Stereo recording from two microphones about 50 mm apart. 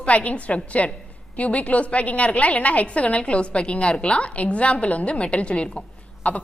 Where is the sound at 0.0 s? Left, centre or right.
Left.